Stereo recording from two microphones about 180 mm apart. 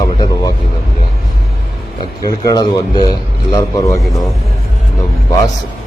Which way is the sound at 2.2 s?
20° left (ahead or behind).